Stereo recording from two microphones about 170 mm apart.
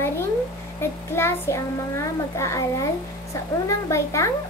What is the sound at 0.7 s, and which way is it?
A child's voice, 15° left (ahead or behind).